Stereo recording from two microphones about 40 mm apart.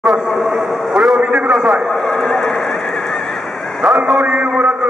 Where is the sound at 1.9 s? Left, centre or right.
Centre.